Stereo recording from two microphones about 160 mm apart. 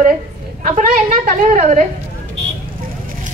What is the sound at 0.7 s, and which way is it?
A woman's voice, 55° right (ahead or behind).